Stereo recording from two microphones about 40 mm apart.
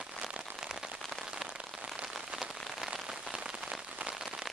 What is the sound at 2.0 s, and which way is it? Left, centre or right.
Rain on surface, centre.